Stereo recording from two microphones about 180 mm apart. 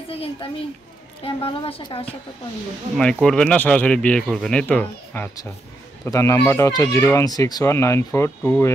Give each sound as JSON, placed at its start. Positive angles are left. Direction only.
{"t": 0.1, "sound": "a woman's voice", "side_deg": 30}
{"t": 3.0, "sound": "speech", "side_deg": 5}